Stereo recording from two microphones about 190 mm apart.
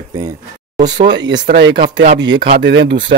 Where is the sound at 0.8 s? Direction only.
65° right (ahead or behind).